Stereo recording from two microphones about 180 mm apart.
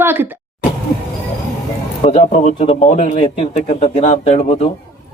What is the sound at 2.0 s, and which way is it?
A man's voice, 40° left (ahead or behind).